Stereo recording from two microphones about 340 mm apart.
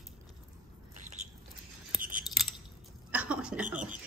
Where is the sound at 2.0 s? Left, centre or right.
Right.